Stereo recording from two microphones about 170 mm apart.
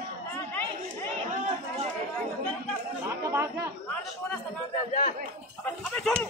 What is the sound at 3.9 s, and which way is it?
Speech, 5° left (ahead or behind).